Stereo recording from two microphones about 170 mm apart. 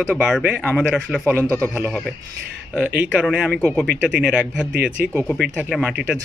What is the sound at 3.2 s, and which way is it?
Speech, 5° right (ahead or behind).